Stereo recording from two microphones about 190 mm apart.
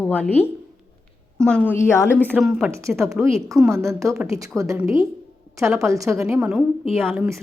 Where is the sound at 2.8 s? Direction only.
15° right (ahead or behind).